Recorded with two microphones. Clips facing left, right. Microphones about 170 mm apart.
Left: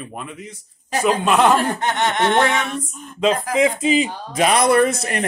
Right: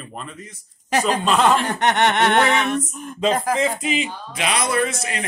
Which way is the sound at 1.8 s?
70° right (ahead or behind).